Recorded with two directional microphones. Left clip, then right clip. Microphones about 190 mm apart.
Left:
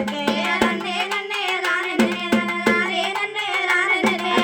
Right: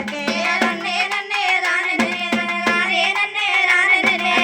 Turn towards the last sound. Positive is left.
turn(degrees=55)  # may be behind; listen again after turning